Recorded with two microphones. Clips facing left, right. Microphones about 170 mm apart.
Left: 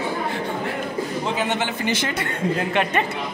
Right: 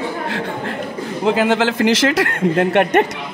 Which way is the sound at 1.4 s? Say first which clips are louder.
Right 8 dB; 90° right.